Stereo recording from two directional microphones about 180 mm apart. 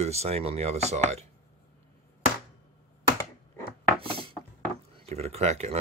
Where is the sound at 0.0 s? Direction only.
35° right (ahead or behind).